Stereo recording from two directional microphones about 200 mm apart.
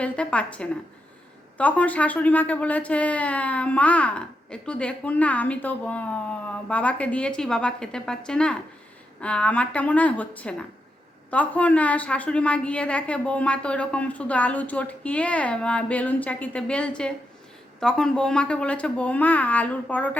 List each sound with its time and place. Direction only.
0.0 s speech: 5° left (ahead or behind)